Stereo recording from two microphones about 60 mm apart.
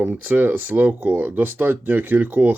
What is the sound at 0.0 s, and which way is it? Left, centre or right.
Speech, right.